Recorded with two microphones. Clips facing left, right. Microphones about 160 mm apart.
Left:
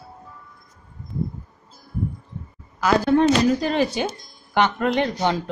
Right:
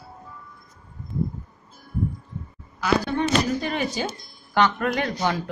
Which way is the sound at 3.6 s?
30° left (ahead or behind).